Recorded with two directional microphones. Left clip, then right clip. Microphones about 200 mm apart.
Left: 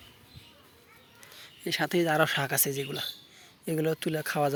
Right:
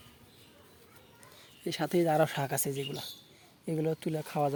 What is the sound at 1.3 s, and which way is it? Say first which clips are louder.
Speech: left 5 dB; centre (ahead or behind).